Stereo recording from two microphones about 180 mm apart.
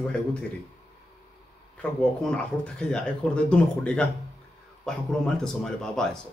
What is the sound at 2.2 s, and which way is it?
A man's voice, 5° left (ahead or behind).